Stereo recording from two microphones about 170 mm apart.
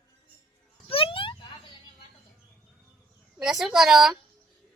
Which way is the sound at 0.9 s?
35° left (ahead or behind).